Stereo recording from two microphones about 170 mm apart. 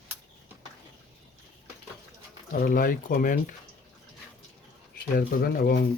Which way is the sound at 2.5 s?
55° left (ahead or behind).